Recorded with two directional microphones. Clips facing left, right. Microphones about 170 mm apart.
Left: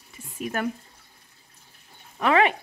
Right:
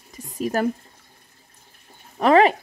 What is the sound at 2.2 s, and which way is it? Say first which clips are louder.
Speech: right 5 dB; 35° right (ahead or behind).